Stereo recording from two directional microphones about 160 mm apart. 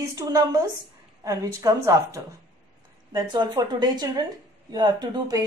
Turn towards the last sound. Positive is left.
turn(degrees=-25)  # may be behind; listen again after turning